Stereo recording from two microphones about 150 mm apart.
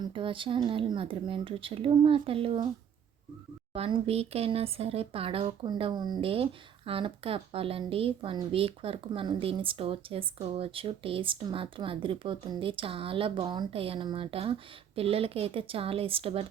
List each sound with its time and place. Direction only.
0.0 s speech: 35° right (ahead or behind)
3.8 s speech: 40° right (ahead or behind)